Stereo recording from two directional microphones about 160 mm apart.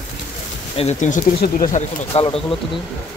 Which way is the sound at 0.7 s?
45° left (ahead or behind).